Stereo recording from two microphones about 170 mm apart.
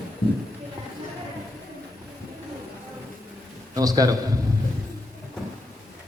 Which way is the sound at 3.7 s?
20° right (ahead or behind).